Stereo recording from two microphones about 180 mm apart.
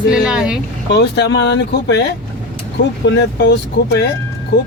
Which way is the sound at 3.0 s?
70° left (ahead or behind).